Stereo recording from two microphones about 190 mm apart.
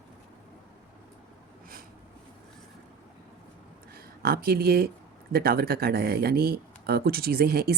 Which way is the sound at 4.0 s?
50° right (ahead or behind).